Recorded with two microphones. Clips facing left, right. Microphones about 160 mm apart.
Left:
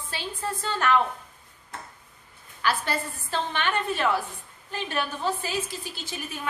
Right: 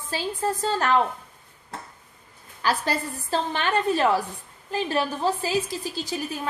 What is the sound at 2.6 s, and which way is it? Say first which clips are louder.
A woman's voice: right 2 dB; 35° right (ahead or behind).